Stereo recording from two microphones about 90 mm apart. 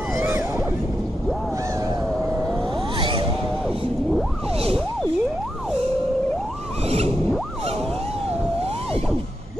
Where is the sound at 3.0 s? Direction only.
70° right (ahead or behind).